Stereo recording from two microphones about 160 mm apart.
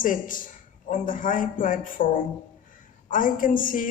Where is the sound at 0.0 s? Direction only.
55° left (ahead or behind).